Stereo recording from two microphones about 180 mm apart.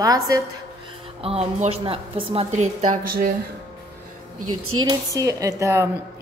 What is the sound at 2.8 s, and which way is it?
Speech, 50° right (ahead or behind).